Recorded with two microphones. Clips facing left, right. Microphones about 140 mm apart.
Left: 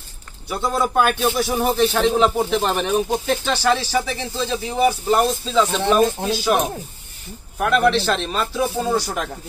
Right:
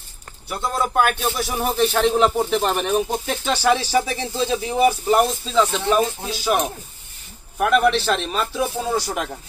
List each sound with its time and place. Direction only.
0.5 s speech: centre (ahead or behind)
7.5 s speech: 5° right (ahead or behind)